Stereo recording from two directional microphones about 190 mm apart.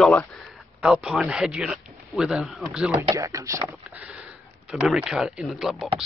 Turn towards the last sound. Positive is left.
turn(degrees=0)  # may be behind; listen again after turning